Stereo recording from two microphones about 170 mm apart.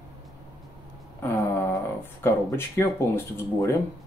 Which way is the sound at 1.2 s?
15° left (ahead or behind).